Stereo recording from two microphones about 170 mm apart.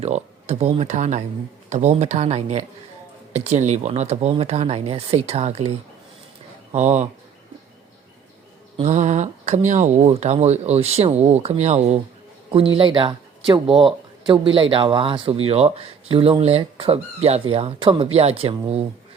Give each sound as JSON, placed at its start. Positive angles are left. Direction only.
{"t": 0.0, "sound": "speech", "side_deg": -40}
{"t": 6.7, "sound": "speech", "side_deg": -45}
{"t": 8.7, "sound": "speech", "side_deg": -40}
{"t": 12.7, "sound": "speech", "side_deg": -30}